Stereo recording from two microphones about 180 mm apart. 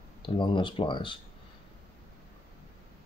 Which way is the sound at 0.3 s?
25° left (ahead or behind).